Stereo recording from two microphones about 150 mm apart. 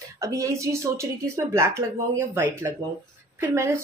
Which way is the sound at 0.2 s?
20° right (ahead or behind).